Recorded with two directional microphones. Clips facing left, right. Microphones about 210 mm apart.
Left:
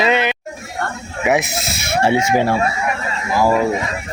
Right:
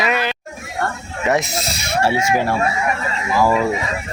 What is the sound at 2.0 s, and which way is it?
Speech, 20° left (ahead or behind).